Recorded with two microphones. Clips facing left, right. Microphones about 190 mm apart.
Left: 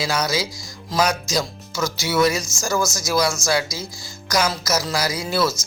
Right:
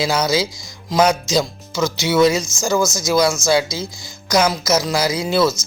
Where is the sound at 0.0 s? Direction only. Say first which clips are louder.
Right 5 dB; 25° right (ahead or behind).